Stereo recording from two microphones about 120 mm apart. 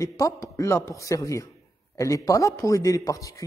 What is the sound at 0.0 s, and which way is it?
A man's voice, 30° left (ahead or behind).